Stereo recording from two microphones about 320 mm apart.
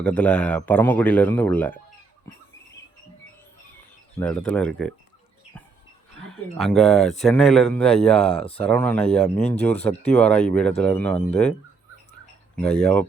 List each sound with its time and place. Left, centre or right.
0.0 s speech: centre
4.2 s speech: centre
6.3 s speech: centre
8.2 s speech: centre
8.6 s speech: centre
12.2 s a sound: centre